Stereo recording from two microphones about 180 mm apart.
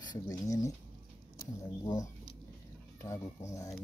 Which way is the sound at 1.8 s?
20° left (ahead or behind).